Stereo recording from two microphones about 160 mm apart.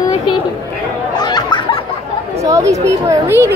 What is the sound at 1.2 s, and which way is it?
Laughter, 25° left (ahead or behind).